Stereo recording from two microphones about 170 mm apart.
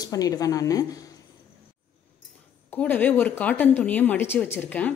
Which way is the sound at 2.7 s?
10° left (ahead or behind).